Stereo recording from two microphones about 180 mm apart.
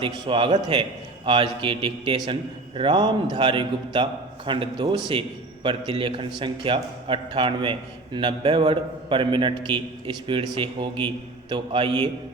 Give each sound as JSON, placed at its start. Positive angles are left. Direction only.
{"t": 0.0, "sound": "a man's voice", "side_deg": -30}